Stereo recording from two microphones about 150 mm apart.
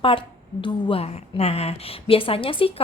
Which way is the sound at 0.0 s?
35° left (ahead or behind).